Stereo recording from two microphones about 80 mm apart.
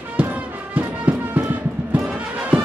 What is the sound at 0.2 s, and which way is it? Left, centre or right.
Music, centre.